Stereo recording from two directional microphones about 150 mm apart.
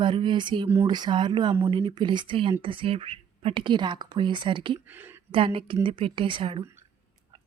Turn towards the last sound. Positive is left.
turn(degrees=-35)  # may be behind; listen again after turning